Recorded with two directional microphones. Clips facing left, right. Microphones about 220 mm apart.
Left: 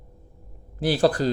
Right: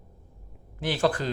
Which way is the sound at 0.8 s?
35° left (ahead or behind).